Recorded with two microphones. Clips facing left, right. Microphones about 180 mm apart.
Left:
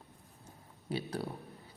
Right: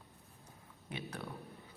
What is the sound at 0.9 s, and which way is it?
Speech, 35° left (ahead or behind).